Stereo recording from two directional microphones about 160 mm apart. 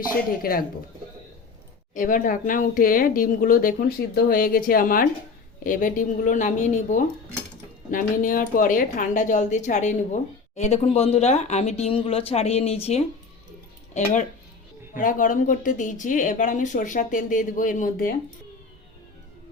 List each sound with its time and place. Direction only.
0.0 s speech: 65° left (ahead or behind)
1.9 s speech: 55° left (ahead or behind)